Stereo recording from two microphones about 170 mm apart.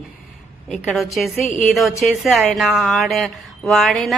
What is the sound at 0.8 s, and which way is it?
A woman's voice, centre (ahead or behind).